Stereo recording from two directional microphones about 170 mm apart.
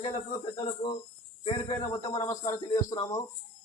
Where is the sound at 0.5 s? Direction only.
25° left (ahead or behind).